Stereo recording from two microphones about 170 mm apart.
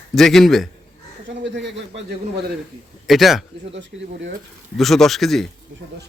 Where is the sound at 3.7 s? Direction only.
90° right.